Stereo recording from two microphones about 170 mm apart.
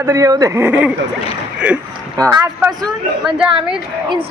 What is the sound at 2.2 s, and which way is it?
Speech, 20° right (ahead or behind).